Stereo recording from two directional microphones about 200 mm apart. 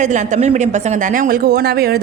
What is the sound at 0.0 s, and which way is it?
A woman's voice, 35° right (ahead or behind).